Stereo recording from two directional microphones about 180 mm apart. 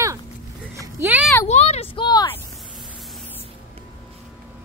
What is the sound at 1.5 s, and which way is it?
Speech, 35° left (ahead or behind).